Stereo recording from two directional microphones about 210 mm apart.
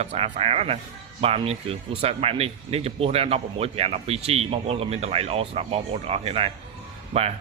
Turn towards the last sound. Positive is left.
turn(degrees=-30)  # may be behind; listen again after turning